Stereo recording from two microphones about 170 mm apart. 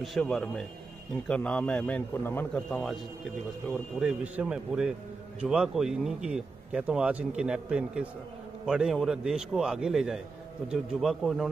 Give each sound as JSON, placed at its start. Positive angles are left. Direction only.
{"t": 0.0, "sound": "speech", "side_deg": 0}